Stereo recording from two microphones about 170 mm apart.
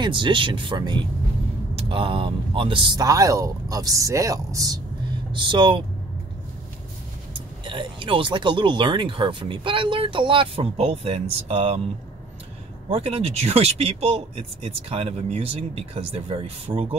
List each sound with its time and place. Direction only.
0.0 s speech: 30° right (ahead or behind)
7.3 s speech: 30° right (ahead or behind)
12.9 s speech: 35° right (ahead or behind)